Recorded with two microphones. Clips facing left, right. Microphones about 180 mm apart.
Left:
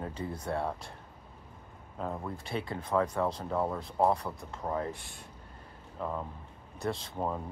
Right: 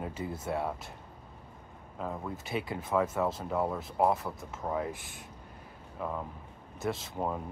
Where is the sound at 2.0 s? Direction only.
Centre (ahead or behind).